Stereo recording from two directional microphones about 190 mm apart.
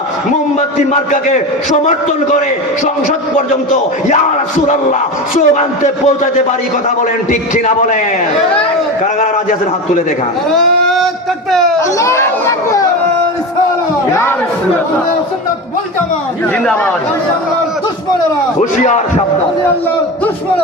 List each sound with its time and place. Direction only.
1.1 s speech: 40° left (ahead or behind)
5.4 s speech: 40° left (ahead or behind)
7.3 s speech: 40° left (ahead or behind)
10.8 s a sound: centre (ahead or behind)
11.9 s speech: 15° left (ahead or behind)
18.6 s speech: 40° left (ahead or behind)